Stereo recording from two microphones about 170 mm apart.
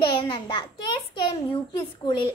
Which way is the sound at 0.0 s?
30° left (ahead or behind).